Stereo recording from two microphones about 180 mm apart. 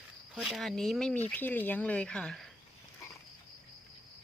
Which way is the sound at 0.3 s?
Centre (ahead or behind).